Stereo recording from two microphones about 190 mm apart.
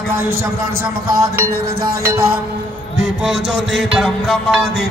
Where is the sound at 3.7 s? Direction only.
Centre (ahead or behind).